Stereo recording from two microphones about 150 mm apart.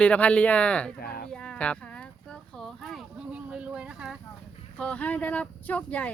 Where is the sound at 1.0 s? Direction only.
90° left.